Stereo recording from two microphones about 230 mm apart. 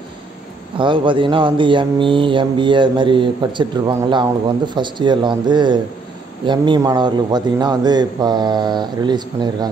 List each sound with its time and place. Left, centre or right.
0.7 s speech: right